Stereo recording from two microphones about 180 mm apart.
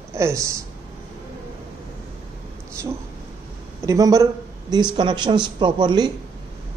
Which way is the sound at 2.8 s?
15° right (ahead or behind).